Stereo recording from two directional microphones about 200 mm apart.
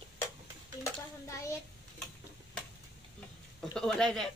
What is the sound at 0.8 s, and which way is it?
Speech, 15° left (ahead or behind).